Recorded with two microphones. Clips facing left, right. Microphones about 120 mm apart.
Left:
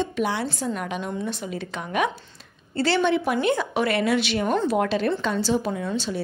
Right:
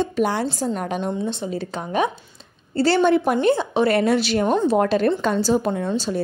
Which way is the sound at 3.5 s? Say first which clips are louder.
Right 4 dB; 30° right (ahead or behind).